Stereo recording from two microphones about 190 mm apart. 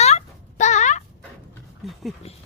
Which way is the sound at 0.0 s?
35° left (ahead or behind).